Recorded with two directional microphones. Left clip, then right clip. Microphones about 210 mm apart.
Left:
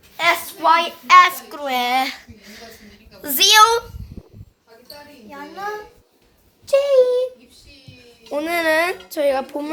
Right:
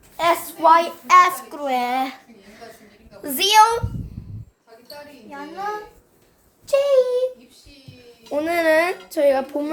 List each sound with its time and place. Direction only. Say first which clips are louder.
0.2 s a child's voice: even; 10° right (ahead or behind)
1.5 s a woman's voice: left 3 dB; 5° left (ahead or behind)
6.7 s speech: left 2 dB; 35° left (ahead or behind)
8.3 s a child's voice: right 1 dB; 5° left (ahead or behind)